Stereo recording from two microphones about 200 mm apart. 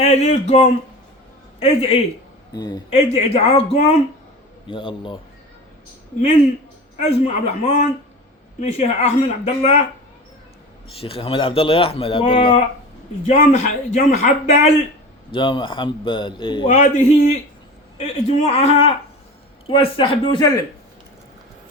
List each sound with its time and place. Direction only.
0.0 s a man's voice: 35° left (ahead or behind)
2.5 s speech: 20° left (ahead or behind)
2.9 s a man's voice: 30° left (ahead or behind)
6.9 s a man's voice: 35° left (ahead or behind)
11.0 s a man's voice: 25° left (ahead or behind)
16.6 s a man's voice: 35° left (ahead or behind)